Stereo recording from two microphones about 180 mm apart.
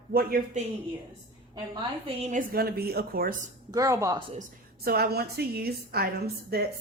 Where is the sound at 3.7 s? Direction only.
20° right (ahead or behind).